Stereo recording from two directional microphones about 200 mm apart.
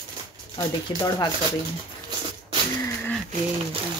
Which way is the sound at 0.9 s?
20° left (ahead or behind).